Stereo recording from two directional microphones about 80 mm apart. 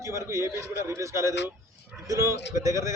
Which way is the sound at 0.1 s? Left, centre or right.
Right.